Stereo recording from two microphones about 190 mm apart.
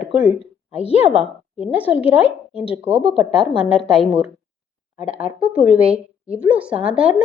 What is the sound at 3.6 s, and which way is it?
Speech, 30° left (ahead or behind).